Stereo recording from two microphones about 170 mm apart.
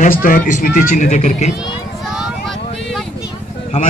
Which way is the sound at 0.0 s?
55° left (ahead or behind).